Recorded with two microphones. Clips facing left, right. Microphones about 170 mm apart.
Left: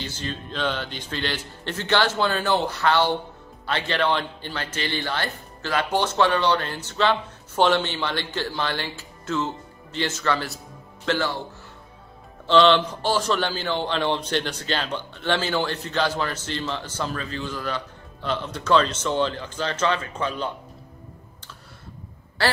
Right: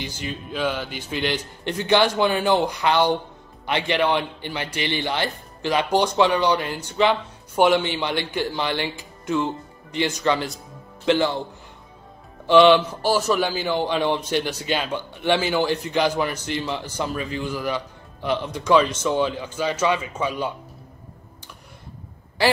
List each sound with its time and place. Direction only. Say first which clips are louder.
0.0 s a man's voice: right 1 dB; 10° right (ahead or behind)
12.4 s a man's voice: right 3 dB; 10° right (ahead or behind)
22.4 s speech: right 4 dB; 15° right (ahead or behind)